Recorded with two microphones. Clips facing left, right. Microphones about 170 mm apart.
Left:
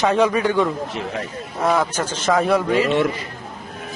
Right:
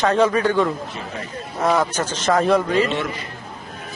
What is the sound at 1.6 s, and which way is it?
Speech, centre (ahead or behind).